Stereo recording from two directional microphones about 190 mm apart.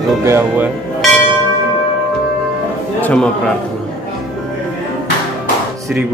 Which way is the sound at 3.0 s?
5° left (ahead or behind).